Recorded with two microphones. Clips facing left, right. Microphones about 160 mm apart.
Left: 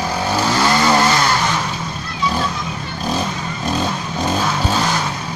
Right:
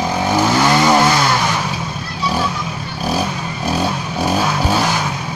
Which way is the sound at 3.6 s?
10° right (ahead or behind).